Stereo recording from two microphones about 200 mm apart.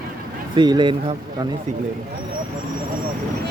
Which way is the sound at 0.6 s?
20° right (ahead or behind).